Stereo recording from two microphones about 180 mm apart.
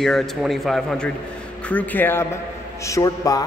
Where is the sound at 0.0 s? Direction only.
Centre (ahead or behind).